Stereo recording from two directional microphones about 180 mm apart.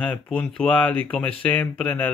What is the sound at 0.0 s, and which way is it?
Speech, 5° left (ahead or behind).